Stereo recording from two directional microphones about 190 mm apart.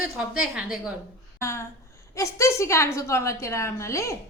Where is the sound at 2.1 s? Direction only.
15° left (ahead or behind).